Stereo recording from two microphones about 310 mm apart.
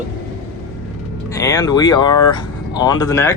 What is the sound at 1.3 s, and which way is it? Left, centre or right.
Speech, centre.